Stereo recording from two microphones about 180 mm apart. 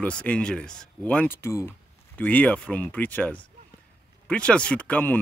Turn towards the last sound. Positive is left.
turn(degrees=10)  # may be behind; listen again after turning